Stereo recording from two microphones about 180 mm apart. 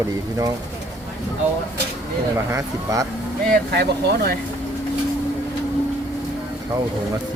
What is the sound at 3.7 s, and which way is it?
Speech, 65° right (ahead or behind).